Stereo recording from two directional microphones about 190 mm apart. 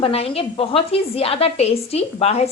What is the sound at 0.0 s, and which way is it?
A woman's voice, 30° left (ahead or behind).